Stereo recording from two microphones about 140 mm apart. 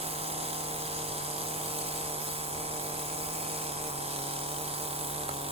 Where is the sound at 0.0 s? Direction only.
45° right (ahead or behind).